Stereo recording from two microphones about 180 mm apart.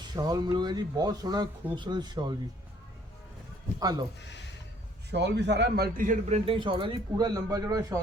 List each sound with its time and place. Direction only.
0.0 s speech: 20° right (ahead or behind)
3.8 s speech: 20° right (ahead or behind)
5.1 s a man's voice: 70° right (ahead or behind); by 7.9 s 20° right (ahead or behind)